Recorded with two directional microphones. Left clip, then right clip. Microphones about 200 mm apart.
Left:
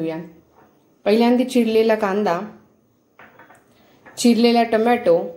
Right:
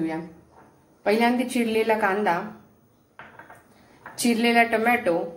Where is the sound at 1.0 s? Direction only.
55° left (ahead or behind).